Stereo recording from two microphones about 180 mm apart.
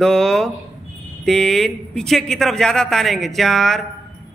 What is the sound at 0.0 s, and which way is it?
Speech, 5° left (ahead or behind).